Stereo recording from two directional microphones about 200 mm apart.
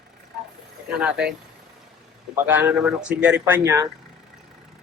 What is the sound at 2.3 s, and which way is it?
A man's voice, 10° right (ahead or behind).